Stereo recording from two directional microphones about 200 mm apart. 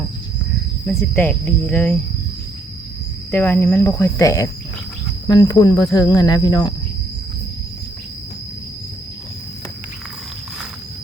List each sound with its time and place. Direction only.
0.9 s speech: 10° left (ahead or behind)
3.3 s speech: 10° left (ahead or behind)